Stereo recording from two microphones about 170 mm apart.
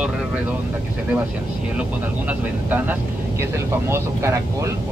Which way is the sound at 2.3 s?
10° right (ahead or behind).